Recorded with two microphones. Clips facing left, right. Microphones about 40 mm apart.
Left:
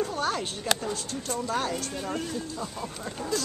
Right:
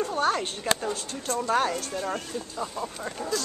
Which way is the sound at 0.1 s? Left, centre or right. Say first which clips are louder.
Right 4 dB; centre.